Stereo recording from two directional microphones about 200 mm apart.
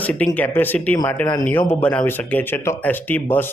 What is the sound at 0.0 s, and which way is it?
Speech, 5° left (ahead or behind).